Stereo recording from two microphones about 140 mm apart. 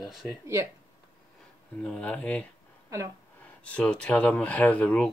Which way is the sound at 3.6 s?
10° left (ahead or behind).